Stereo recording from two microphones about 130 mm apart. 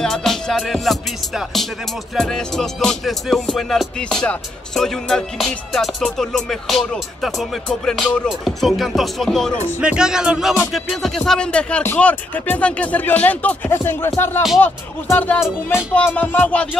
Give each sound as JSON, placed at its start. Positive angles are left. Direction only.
{"t": 0.0, "sound": "music", "side_deg": 5}
{"t": 9.8, "sound": "speech", "side_deg": -5}